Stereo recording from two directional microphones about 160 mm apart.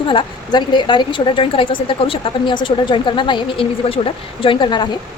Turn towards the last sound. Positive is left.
turn(degrees=30)  # may be behind; listen again after turning